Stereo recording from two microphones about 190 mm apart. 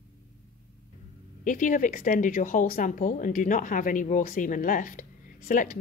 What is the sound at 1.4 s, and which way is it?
Speech, 45° left (ahead or behind).